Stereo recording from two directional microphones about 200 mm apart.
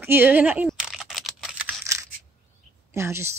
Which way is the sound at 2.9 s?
15° right (ahead or behind).